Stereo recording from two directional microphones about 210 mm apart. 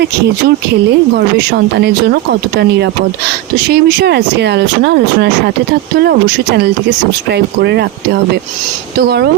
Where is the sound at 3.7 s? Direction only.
50° right (ahead or behind).